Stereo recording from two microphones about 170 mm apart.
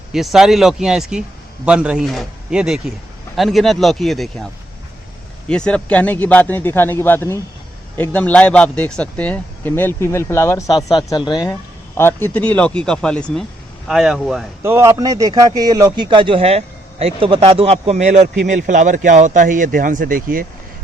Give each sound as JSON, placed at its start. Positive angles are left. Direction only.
{"t": 0.1, "sound": "a man's voice", "side_deg": 0}
{"t": 5.5, "sound": "speech", "side_deg": 5}
{"t": 11.9, "sound": "a man's voice", "side_deg": 15}
{"t": 14.6, "sound": "a man's voice", "side_deg": -15}